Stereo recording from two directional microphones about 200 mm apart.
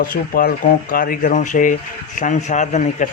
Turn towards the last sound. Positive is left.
turn(degrees=40)  # may be behind; listen again after turning